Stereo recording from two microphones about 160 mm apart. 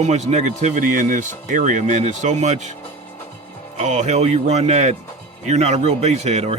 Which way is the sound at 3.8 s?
50° right (ahead or behind).